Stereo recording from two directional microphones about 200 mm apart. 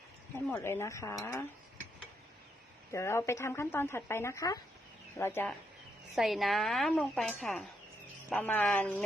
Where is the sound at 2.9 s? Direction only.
15° left (ahead or behind).